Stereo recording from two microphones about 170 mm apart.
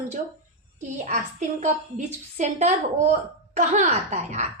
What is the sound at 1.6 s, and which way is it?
A woman's voice, 45° right (ahead or behind).